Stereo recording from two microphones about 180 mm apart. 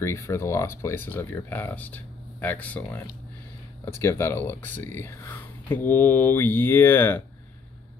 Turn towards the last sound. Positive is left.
turn(degrees=10)  # may be behind; listen again after turning